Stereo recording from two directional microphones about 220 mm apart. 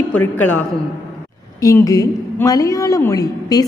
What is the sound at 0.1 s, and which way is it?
A woman's voice, 10° left (ahead or behind).